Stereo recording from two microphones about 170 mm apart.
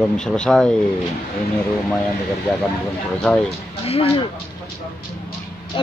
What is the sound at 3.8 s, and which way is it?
Speech, 35° left (ahead or behind).